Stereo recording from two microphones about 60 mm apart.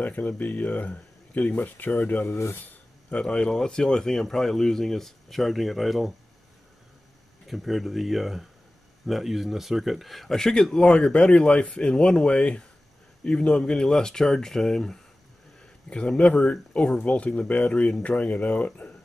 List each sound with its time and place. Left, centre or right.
0.0 s speech: left
2.3 s speech: left
2.6 s a sound: left
3.2 s speech: centre
7.4 s speech: centre; by 18.9 s left